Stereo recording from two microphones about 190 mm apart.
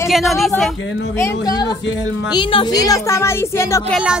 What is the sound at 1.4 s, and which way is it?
A woman's voice, 20° left (ahead or behind).